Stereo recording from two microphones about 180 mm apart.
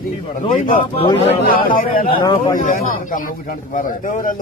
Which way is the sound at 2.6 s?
50° left (ahead or behind).